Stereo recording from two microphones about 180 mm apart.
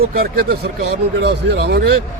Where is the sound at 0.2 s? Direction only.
55° right (ahead or behind).